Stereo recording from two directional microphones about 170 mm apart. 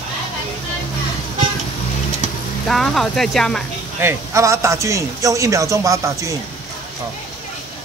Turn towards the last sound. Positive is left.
turn(degrees=-15)  # may be behind; listen again after turning